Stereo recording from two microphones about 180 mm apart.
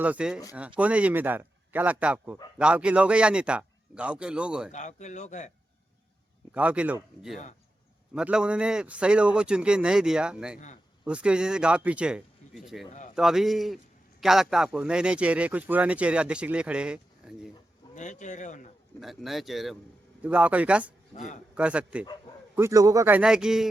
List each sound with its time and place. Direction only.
0.0 s a man's voice: 5° right (ahead or behind)
4.7 s a man's voice: 40° left (ahead or behind)
6.5 s a man's voice: 5° right (ahead or behind)
17.9 s a man's voice: 45° left (ahead or behind)
18.9 s a man's voice: centre (ahead or behind)
21.2 s a man's voice: 45° left (ahead or behind)
21.5 s speech: 5° right (ahead or behind)
22.5 s speech: 15° right (ahead or behind)